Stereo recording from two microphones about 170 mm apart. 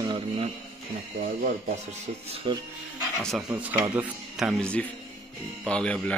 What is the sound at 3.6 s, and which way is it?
Speech, 10° right (ahead or behind).